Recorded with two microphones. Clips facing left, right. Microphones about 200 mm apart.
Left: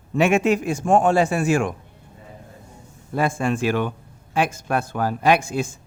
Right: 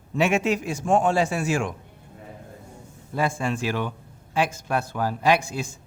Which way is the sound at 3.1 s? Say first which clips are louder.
Left 4 dB; 55° left (ahead or behind).